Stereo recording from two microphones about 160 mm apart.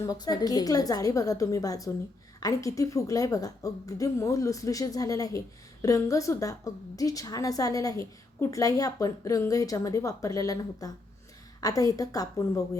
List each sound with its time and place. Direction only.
0.0 s a woman's voice: 25° left (ahead or behind)